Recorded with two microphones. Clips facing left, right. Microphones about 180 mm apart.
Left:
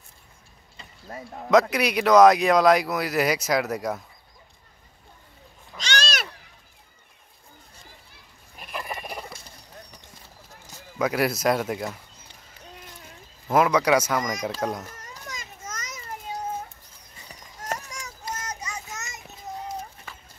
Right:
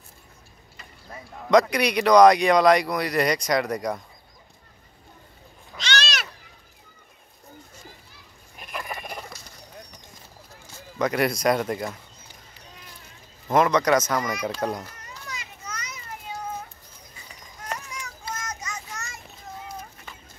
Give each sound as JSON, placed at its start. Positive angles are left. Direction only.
{"t": 1.5, "sound": "speech", "side_deg": 0}
{"t": 8.5, "sound": "a sound", "side_deg": 5}
{"t": 11.0, "sound": "speech", "side_deg": 5}
{"t": 13.5, "sound": "speech", "side_deg": 5}
{"t": 15.0, "sound": "children playing", "side_deg": 45}
{"t": 17.6, "sound": "children playing", "side_deg": 40}
{"t": 18.9, "sound": "children playing", "side_deg": 20}